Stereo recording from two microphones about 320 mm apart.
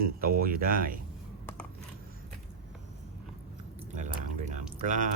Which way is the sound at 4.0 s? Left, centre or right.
Right.